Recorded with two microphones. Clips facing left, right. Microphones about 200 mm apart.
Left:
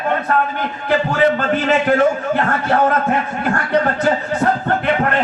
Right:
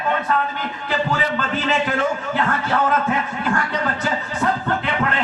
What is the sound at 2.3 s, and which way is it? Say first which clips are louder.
A man's voice: left 4 dB; 50° left (ahead or behind).